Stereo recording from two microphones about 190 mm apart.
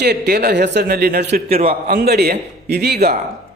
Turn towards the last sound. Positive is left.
turn(degrees=-55)  # may be behind; listen again after turning